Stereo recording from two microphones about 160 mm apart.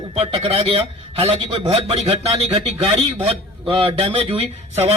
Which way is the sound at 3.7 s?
35° right (ahead or behind).